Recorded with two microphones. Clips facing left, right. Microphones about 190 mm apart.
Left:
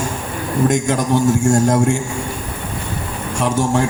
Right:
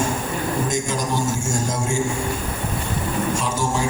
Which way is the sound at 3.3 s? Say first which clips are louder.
Left 6 dB; 65° left (ahead or behind).